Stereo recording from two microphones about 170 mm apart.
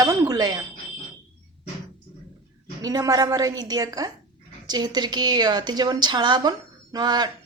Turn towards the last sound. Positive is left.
turn(degrees=-25)  # may be behind; listen again after turning